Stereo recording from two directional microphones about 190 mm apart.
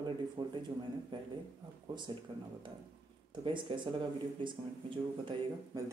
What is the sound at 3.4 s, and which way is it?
A man's voice, 25° right (ahead or behind).